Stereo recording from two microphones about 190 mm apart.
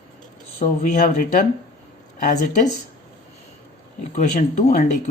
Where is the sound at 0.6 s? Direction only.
40° left (ahead or behind).